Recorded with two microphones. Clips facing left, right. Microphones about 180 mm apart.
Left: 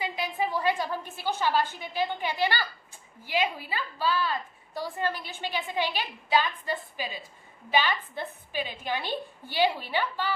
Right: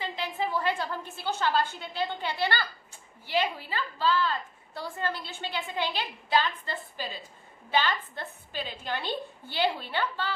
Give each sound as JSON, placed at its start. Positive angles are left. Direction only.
{"t": 0.0, "sound": "a woman's voice", "side_deg": 10}